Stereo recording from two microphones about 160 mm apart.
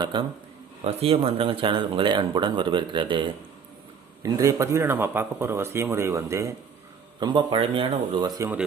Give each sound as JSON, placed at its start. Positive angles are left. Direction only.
{"t": 0.0, "sound": "a man's voice", "side_deg": -30}
{"t": 0.9, "sound": "speech", "side_deg": -40}
{"t": 4.2, "sound": "speech", "side_deg": -20}
{"t": 8.4, "sound": "speech", "side_deg": -10}